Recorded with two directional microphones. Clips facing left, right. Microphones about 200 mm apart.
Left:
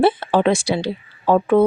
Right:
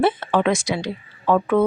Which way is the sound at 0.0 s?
30° left (ahead or behind).